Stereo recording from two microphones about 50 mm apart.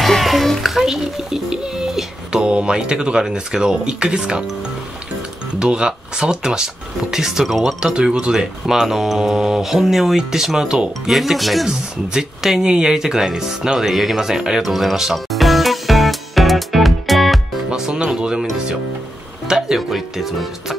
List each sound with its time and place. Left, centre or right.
0.0 s music: centre
2.4 s speech: centre
5.6 s speech: centre
11.1 s music: centre
12.1 s speech: centre
14.7 s music: centre
17.6 s speech: centre
19.4 s music: centre